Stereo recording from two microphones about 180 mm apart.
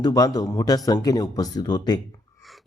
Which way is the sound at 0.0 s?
20° left (ahead or behind).